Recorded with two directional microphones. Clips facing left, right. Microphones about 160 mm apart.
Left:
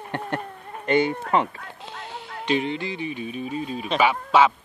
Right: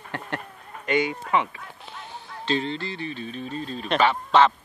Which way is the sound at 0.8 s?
30° left (ahead or behind).